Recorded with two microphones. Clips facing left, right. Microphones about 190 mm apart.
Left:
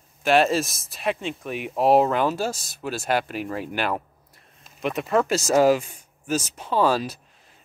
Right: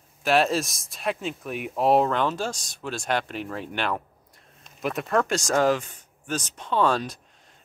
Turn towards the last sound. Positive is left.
turn(degrees=5)  # may be behind; listen again after turning